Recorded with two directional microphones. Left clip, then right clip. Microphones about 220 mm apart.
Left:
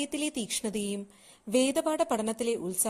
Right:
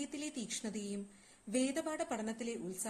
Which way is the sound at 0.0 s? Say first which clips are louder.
Left 10 dB; 30° left (ahead or behind).